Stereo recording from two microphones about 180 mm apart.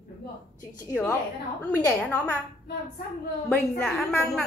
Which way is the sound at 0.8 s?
15° left (ahead or behind).